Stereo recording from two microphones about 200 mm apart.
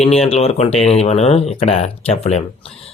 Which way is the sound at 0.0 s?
30° left (ahead or behind).